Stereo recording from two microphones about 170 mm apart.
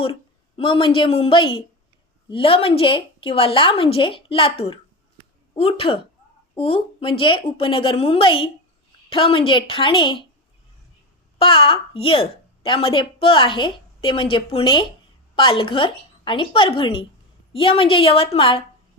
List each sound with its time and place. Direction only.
0.0 s a woman's voice: 30° left (ahead or behind)
11.3 s a woman's voice: 35° left (ahead or behind)